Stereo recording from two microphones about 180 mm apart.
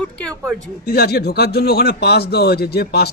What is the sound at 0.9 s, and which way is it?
Speech, 60° left (ahead or behind).